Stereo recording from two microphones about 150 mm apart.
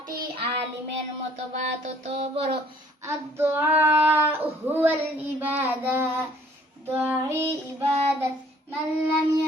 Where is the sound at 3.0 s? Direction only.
15° right (ahead or behind).